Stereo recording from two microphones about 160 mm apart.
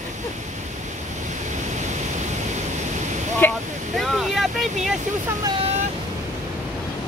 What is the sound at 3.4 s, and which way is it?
Speech, 15° left (ahead or behind).